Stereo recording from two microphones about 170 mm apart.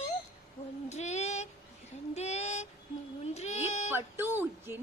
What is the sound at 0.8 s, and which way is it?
Child singing, 40° left (ahead or behind).